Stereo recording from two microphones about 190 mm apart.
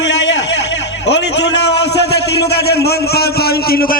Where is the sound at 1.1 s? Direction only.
65° left (ahead or behind).